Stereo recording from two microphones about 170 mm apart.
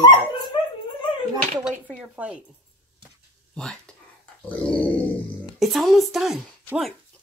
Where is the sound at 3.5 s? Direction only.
5° left (ahead or behind).